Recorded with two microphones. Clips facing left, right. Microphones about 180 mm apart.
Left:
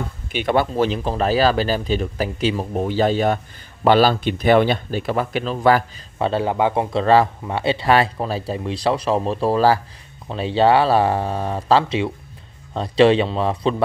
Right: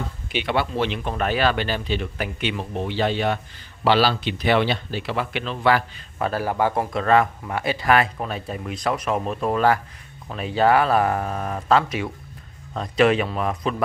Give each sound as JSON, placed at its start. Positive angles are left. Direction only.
{"t": 0.4, "sound": "speech", "side_deg": 45}
{"t": 6.1, "sound": "speech", "side_deg": 25}